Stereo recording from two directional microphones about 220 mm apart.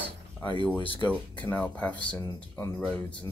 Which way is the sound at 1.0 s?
20° left (ahead or behind).